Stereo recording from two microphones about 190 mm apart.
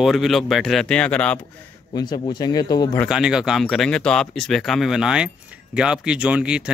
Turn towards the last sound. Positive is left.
turn(degrees=-5)  # may be behind; listen again after turning